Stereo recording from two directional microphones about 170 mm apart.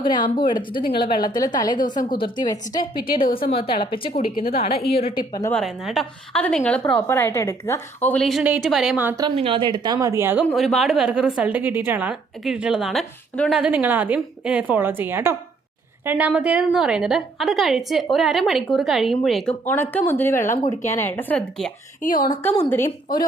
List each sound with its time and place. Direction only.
0.0 s a woman's voice: 25° left (ahead or behind)
1.9 s a woman's voice: 50° left (ahead or behind)
2.4 s a woman's voice: 25° left (ahead or behind)
3.0 s speech: 55° left (ahead or behind)
3.3 s a woman's voice: 30° left (ahead or behind)
4.1 s speech: 60° left (ahead or behind)
4.5 s a woman's voice: 35° left (ahead or behind)
5.5 s a woman's voice: centre (ahead or behind)
9.3 s speech: 35° right (ahead or behind); by 10.4 s 15° right (ahead or behind)
10.4 s a woman's voice: centre (ahead or behind)
13.5 s a woman's voice: 5° right (ahead or behind)
22.0 s speech: 55° left (ahead or behind)